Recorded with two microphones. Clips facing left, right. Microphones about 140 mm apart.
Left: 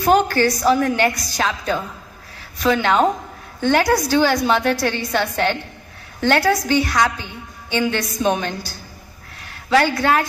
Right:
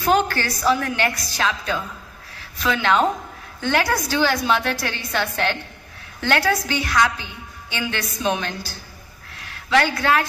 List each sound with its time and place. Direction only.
0.0 s a woman's voice: 45° left (ahead or behind)